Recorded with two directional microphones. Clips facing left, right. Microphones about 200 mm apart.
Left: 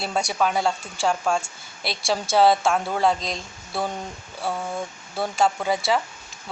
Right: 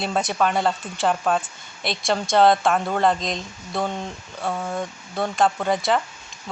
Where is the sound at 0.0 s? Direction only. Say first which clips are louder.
Right 2 dB; centre (ahead or behind).